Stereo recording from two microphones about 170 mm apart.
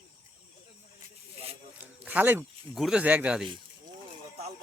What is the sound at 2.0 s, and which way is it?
Speech, 10° right (ahead or behind).